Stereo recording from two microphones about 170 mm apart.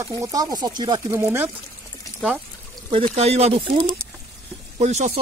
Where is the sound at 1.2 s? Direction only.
10° right (ahead or behind).